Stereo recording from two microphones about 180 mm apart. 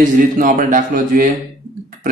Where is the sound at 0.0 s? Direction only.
45° right (ahead or behind).